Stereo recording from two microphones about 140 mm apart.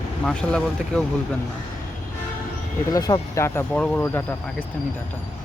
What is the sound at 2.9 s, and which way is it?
Speech, 25° left (ahead or behind).